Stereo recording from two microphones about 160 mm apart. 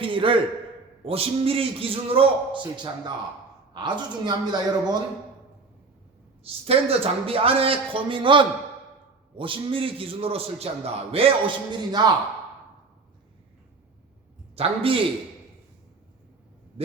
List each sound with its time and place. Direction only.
0.0 s a man's voice: 35° right (ahead or behind)
6.4 s a man's voice: 35° right (ahead or behind)
14.5 s a man's voice: 35° right (ahead or behind)